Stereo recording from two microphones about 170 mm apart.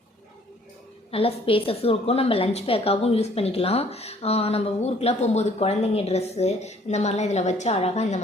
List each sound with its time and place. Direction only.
1.1 s a woman's voice: 35° left (ahead or behind)